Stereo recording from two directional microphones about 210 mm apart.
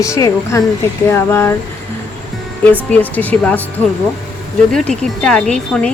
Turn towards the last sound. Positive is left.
turn(degrees=5)  # may be behind; listen again after turning